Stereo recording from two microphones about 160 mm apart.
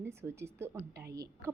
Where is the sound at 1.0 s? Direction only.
80° right.